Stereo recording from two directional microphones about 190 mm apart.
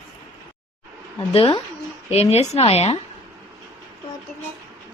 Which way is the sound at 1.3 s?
30° left (ahead or behind).